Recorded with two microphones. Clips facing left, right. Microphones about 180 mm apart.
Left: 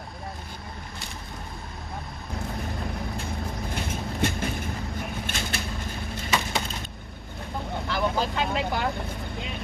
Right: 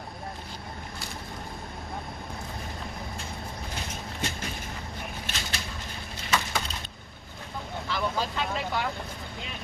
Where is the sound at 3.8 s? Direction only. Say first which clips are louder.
Left 9 dB; 55° left (ahead or behind).